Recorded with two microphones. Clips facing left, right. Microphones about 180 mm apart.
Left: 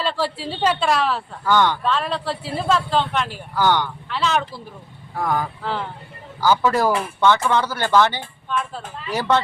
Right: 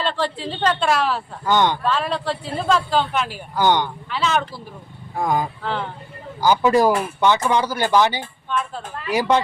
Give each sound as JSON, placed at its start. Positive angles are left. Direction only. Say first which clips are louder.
{"t": 0.0, "sound": "speech", "louder": "even", "side_deg": 5}
{"t": 1.5, "sound": "speech", "louder": "even", "side_deg": -20}
{"t": 1.8, "sound": "speech", "louder": "right 1 dB", "side_deg": 0}
{"t": 3.5, "sound": "speech", "louder": "right 1 dB", "side_deg": -20}
{"t": 4.1, "sound": "speech", "louder": "even", "side_deg": 0}
{"t": 5.1, "sound": "speech", "louder": "right 2 dB", "side_deg": -15}
{"t": 8.4, "sound": "speech", "louder": "even", "side_deg": 0}
{"t": 9.0, "sound": "speech", "louder": "right 2 dB", "side_deg": -10}